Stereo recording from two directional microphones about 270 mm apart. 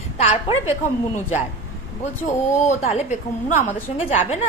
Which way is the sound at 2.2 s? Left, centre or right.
Left.